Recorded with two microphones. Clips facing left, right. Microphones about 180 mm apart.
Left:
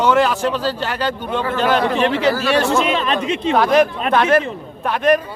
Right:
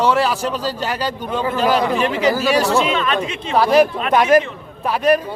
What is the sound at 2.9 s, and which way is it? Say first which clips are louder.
Speech: even; 35° left (ahead or behind).